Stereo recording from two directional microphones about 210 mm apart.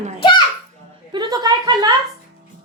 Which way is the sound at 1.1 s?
20° right (ahead or behind).